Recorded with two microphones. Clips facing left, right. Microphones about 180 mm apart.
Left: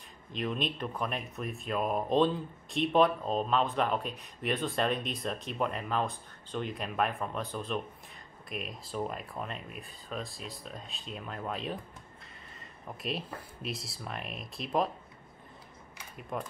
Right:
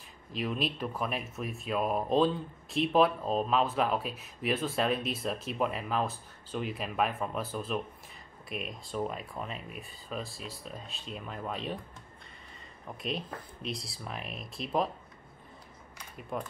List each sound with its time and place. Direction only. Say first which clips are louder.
0.3 s speech: right 1 dB; 5° right (ahead or behind)
16.2 s speech: right 1 dB; centre (ahead or behind)